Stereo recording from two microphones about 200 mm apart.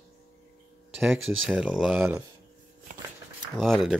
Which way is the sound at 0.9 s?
5° right (ahead or behind).